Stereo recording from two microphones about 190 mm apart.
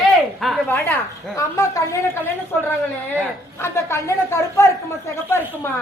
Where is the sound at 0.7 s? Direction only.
15° left (ahead or behind).